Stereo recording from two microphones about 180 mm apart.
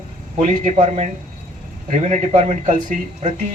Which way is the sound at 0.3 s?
40° right (ahead or behind).